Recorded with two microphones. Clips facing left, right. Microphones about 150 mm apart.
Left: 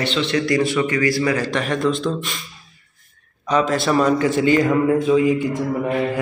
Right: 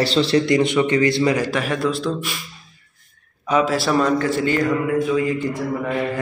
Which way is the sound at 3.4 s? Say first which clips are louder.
Even; 5° right (ahead or behind).